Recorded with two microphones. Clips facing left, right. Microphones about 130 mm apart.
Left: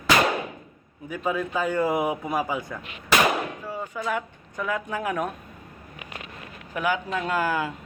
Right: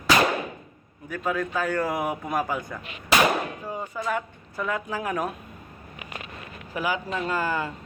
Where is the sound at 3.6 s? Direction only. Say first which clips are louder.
Even; 15° right (ahead or behind).